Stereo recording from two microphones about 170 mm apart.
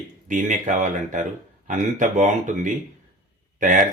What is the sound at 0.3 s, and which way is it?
Speech, 50° right (ahead or behind).